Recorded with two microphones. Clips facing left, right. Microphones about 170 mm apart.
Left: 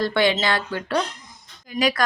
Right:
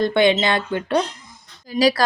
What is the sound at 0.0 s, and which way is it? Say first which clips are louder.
A woman's voice: right 4 dB; 20° right (ahead or behind).